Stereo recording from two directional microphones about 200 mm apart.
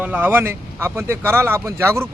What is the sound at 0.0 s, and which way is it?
Speech, 10° right (ahead or behind).